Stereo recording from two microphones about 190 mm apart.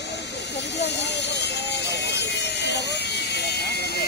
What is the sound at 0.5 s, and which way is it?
Hiss, 65° left (ahead or behind).